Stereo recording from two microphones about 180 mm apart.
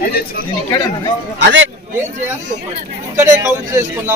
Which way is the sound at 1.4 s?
75° right (ahead or behind).